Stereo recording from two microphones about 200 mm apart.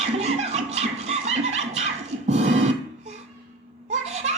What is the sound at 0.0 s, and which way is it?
Music, 35° right (ahead or behind).